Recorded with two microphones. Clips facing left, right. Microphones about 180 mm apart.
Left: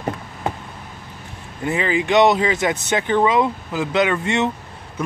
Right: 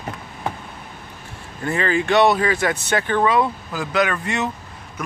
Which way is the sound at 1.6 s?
15° left (ahead or behind).